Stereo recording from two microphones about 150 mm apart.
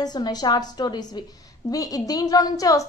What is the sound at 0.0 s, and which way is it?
A woman's voice, 25° left (ahead or behind).